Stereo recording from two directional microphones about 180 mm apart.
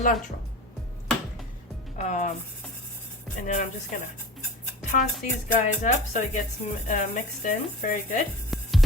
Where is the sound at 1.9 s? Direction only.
40° left (ahead or behind).